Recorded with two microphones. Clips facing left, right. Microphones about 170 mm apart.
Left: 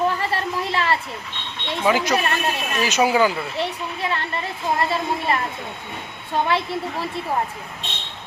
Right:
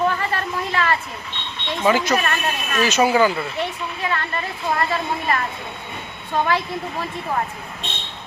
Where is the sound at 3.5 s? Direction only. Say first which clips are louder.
Even; 30° left (ahead or behind).